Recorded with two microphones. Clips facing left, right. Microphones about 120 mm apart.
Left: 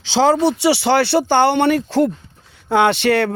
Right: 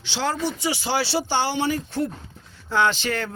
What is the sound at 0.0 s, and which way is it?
Speech, 90° left.